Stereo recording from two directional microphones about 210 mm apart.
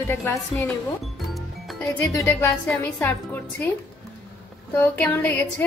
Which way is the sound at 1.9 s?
10° left (ahead or behind).